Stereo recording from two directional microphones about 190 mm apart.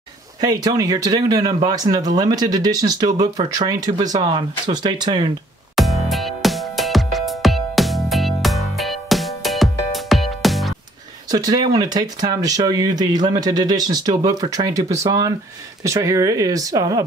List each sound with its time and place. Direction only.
0.4 s speech: 20° right (ahead or behind)
5.8 s music: centre (ahead or behind)
11.2 s speech: 20° right (ahead or behind)